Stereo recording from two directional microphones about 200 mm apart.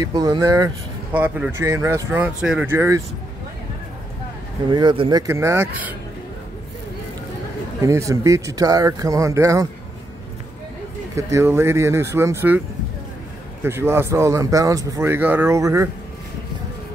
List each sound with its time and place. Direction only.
0.0 s speech: 20° right (ahead or behind)
1.1 s speech: 10° right (ahead or behind)
4.6 s speech: 20° right (ahead or behind)
7.8 s speech: 15° right (ahead or behind)
11.1 s speech: 15° right (ahead or behind)